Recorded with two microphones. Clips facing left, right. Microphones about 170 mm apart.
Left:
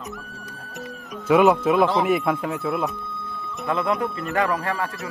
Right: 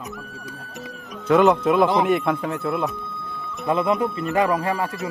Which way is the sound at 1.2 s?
5° left (ahead or behind).